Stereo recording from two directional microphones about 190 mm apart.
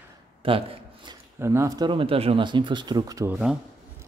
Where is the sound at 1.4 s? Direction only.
15° right (ahead or behind).